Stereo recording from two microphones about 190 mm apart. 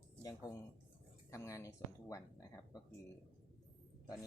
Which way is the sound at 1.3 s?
15° left (ahead or behind).